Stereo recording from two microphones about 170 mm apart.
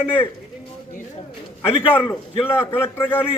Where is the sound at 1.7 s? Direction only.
10° left (ahead or behind).